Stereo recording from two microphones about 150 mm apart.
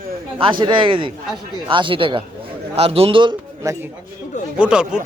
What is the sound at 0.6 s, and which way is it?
A man's voice, 35° right (ahead or behind).